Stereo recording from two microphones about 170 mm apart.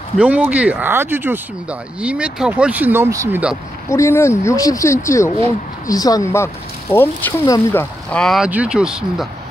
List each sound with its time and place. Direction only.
0.2 s speech: 10° right (ahead or behind)
3.9 s speech: 15° left (ahead or behind)
8.1 s speech: 5° left (ahead or behind)